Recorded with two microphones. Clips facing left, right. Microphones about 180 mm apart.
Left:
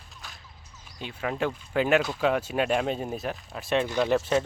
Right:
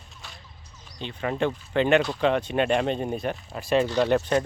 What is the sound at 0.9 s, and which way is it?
Speech, 5° left (ahead or behind).